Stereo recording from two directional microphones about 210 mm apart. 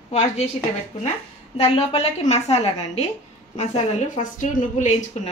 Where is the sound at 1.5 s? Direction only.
30° left (ahead or behind).